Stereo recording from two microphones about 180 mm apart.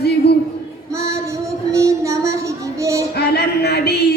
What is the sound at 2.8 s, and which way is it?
Speech, 15° right (ahead or behind).